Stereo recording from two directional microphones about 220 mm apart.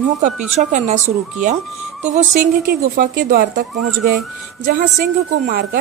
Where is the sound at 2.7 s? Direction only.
40° right (ahead or behind).